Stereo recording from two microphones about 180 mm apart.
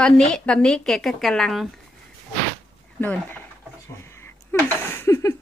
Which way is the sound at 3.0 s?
10° left (ahead or behind).